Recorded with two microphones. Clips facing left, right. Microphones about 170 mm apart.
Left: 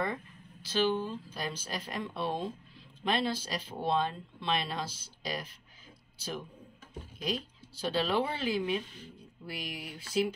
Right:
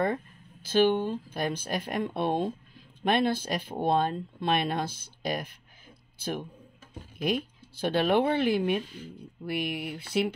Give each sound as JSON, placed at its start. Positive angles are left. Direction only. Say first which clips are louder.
{"t": 0.0, "sound": "speech", "louder": "right 6 dB", "side_deg": -55}